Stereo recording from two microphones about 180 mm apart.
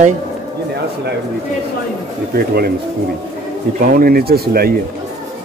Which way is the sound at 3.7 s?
55° right (ahead or behind).